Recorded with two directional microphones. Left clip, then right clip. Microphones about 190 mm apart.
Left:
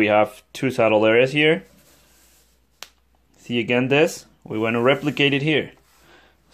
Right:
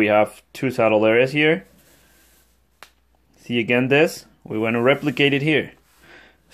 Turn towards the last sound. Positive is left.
turn(degrees=-20)  # may be behind; listen again after turning